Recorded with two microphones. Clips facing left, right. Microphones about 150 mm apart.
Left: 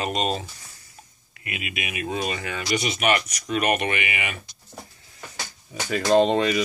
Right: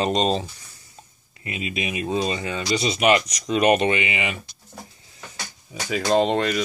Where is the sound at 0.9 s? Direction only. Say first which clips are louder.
Right 2 dB; 25° right (ahead or behind).